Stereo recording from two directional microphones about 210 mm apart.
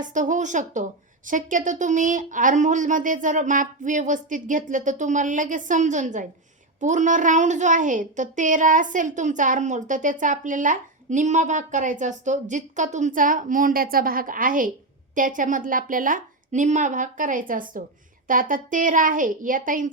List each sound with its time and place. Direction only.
0.0 s a child's voice: 35° right (ahead or behind)